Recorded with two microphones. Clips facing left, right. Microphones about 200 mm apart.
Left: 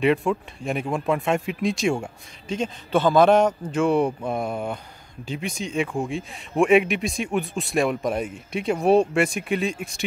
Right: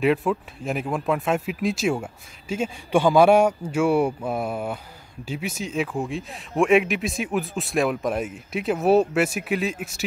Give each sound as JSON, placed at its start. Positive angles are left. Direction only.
{"t": 0.0, "sound": "speech", "side_deg": 0}